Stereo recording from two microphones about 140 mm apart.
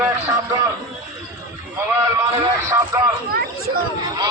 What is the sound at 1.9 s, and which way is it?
Speech, 20° right (ahead or behind).